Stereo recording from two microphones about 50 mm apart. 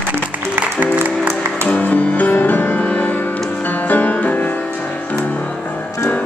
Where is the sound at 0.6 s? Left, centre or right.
Right.